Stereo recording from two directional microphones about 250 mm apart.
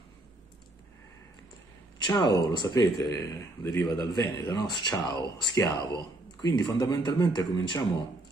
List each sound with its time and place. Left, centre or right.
2.0 s speech: centre